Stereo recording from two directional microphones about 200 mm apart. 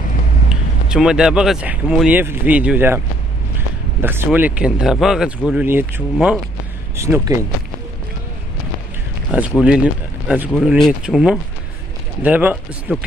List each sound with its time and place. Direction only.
0.5 s speech: 5° right (ahead or behind)
6.1 s speech: centre (ahead or behind)
7.0 s speech: 15° right (ahead or behind)
9.3 s speech: 5° right (ahead or behind)